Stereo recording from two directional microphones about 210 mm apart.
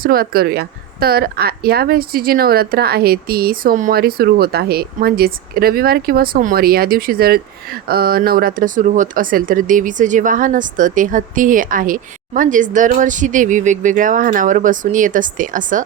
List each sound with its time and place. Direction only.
0.0 s a woman's voice: 45° right (ahead or behind)